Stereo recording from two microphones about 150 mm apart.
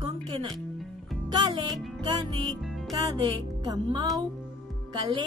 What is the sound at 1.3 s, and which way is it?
Speech, 30° right (ahead or behind).